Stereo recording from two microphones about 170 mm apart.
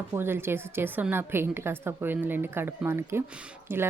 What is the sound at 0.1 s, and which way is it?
A woman's voice, 15° right (ahead or behind).